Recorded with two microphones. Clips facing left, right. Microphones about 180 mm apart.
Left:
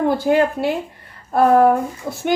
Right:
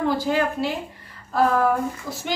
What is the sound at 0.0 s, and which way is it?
A woman's voice, 55° left (ahead or behind).